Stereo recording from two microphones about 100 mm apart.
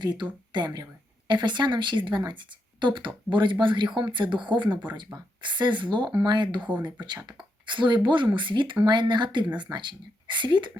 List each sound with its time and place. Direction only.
0.0 s speech: 50° right (ahead or behind)
7.6 s speech: 55° right (ahead or behind)